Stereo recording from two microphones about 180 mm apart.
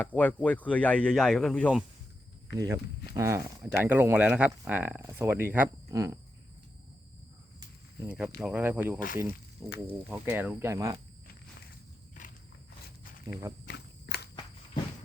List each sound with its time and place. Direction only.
0.0 s speech: 10° left (ahead or behind)
2.5 s speech: 20° right (ahead or behind)
8.0 s speech: 10° right (ahead or behind)
13.7 s walk: 65° left (ahead or behind)